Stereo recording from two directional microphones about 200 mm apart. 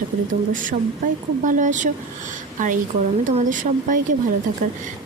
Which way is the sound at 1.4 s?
40° right (ahead or behind).